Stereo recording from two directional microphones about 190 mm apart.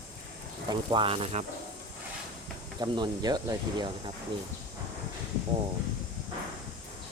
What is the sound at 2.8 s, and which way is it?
Speech, 20° right (ahead or behind).